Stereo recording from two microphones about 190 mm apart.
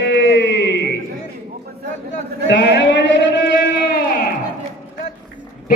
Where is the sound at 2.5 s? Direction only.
65° left (ahead or behind).